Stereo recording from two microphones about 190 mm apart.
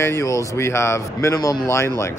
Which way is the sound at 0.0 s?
15° left (ahead or behind).